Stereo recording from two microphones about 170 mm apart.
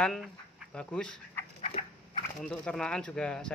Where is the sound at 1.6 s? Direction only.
35° left (ahead or behind).